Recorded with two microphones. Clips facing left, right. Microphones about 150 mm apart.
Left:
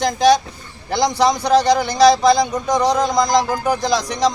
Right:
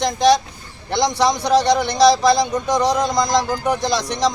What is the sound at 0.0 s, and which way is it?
A man's voice, 5° left (ahead or behind).